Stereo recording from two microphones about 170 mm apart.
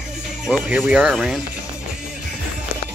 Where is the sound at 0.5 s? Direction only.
5° right (ahead or behind).